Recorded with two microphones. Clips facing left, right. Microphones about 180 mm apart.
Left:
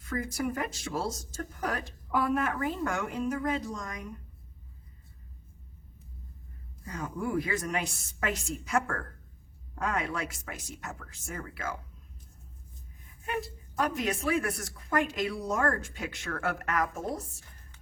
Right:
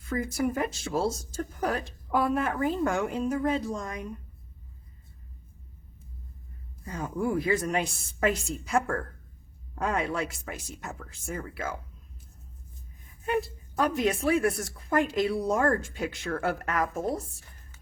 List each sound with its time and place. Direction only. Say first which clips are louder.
0.1 s speech: right 4 dB; 25° right (ahead or behind)
6.8 s speech: right 4 dB; 30° right (ahead or behind)
13.2 s speech: right 6 dB; 30° right (ahead or behind)